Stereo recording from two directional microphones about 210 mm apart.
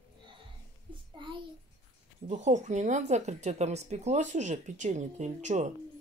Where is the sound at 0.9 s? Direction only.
25° right (ahead or behind).